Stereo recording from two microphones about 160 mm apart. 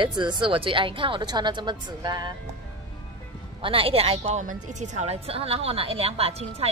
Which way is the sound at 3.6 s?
35° right (ahead or behind).